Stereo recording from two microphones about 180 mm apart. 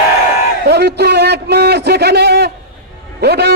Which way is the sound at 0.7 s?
65° right (ahead or behind).